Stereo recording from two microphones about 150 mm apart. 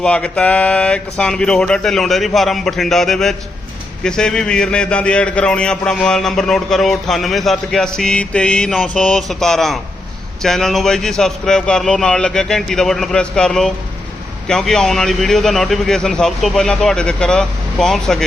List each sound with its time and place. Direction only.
0.0 s a man's voice: 5° left (ahead or behind)